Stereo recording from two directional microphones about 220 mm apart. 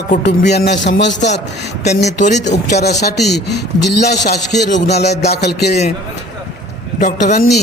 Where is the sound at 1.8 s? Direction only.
30° left (ahead or behind).